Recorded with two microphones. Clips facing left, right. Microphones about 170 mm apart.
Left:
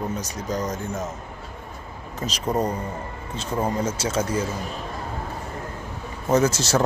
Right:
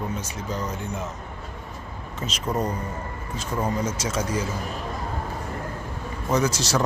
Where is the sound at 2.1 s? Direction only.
35° left (ahead or behind).